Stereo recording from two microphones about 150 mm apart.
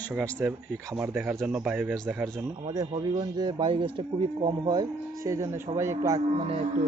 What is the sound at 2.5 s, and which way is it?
Speech, 25° right (ahead or behind).